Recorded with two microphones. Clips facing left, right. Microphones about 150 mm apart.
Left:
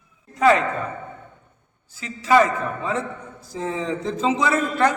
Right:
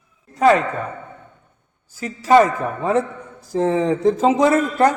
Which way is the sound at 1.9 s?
40° right (ahead or behind).